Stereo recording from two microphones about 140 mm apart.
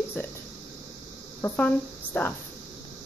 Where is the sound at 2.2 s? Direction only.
15° left (ahead or behind).